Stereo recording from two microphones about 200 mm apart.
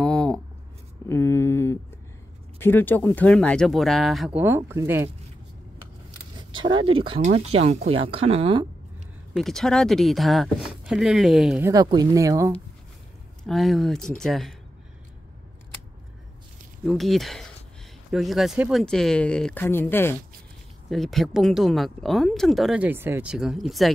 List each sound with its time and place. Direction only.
0.0 s writing: centre (ahead or behind)
1.0 s a sound: 10° left (ahead or behind)
2.6 s speech: 10° left (ahead or behind)
4.4 s speech: 10° right (ahead or behind)
6.5 s speech: 25° right (ahead or behind)
9.3 s speech: centre (ahead or behind)
11.6 s speech: 20° right (ahead or behind)
13.5 s speech: centre (ahead or behind)
16.8 s speech: centre (ahead or behind)
20.9 s speech: centre (ahead or behind)